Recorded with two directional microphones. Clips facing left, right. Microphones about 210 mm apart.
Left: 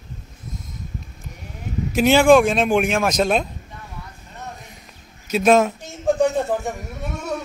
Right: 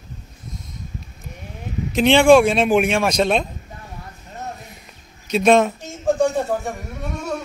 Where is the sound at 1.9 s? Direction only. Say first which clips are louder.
Right 1 dB; 5° left (ahead or behind).